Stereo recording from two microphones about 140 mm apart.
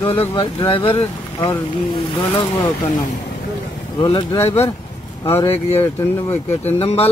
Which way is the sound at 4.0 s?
40° left (ahead or behind).